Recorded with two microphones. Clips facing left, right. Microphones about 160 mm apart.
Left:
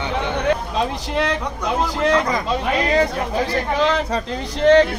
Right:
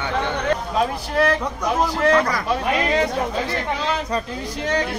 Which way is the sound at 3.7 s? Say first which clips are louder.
Left 6 dB; 90° left.